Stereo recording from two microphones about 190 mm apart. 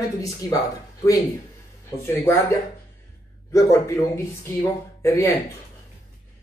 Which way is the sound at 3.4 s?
15° left (ahead or behind).